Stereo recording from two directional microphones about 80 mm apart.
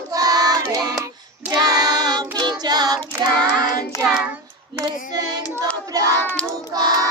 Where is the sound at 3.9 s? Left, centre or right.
Left.